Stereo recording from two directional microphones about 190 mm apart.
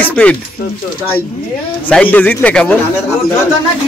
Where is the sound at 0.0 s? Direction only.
5° left (ahead or behind).